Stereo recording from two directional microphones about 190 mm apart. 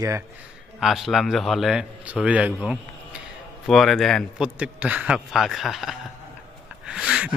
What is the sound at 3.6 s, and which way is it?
A man's voice, centre (ahead or behind).